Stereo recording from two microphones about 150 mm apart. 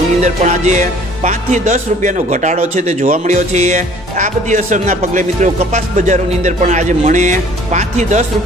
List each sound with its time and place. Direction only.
0.2 s speech: 55° right (ahead or behind)